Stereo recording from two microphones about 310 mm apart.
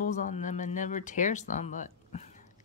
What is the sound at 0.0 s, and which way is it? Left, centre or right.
Speech, left.